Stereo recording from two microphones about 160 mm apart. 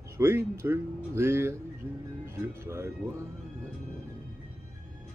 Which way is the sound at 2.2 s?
15° right (ahead or behind).